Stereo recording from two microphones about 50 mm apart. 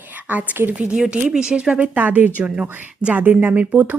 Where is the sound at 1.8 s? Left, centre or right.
Right.